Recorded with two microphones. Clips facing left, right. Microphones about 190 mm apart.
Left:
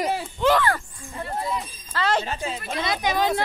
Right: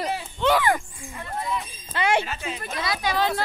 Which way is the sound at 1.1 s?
35° left (ahead or behind).